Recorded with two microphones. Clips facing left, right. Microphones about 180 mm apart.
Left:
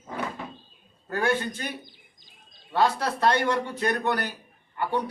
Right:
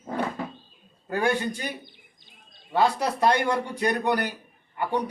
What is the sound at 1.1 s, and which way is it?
Speech, 15° right (ahead or behind).